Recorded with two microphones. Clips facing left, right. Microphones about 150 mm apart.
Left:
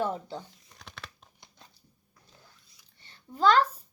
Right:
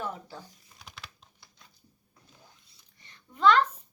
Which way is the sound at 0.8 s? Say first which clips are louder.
Left 2 dB; 5° right (ahead or behind).